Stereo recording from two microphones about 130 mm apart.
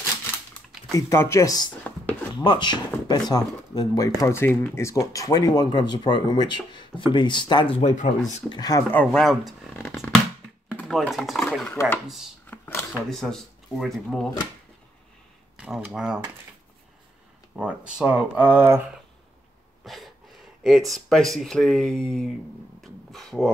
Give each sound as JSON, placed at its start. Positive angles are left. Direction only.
{"t": 0.9, "sound": "speech", "side_deg": 20}
{"t": 7.8, "sound": "speech", "side_deg": 70}
{"t": 8.5, "sound": "speech", "side_deg": 30}
{"t": 8.9, "sound": "speech", "side_deg": 5}
{"t": 10.9, "sound": "speech", "side_deg": 0}
{"t": 12.4, "sound": "a sound", "side_deg": 15}
{"t": 13.1, "sound": "speech", "side_deg": 5}
{"t": 15.5, "sound": "speech", "side_deg": -10}
{"t": 17.6, "sound": "speech", "side_deg": -5}
{"t": 19.8, "sound": "a sound", "side_deg": 0}
{"t": 20.6, "sound": "speech", "side_deg": 0}
{"t": 22.8, "sound": "a sound", "side_deg": 0}